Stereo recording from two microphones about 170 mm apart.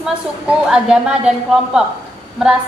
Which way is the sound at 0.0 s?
5° right (ahead or behind).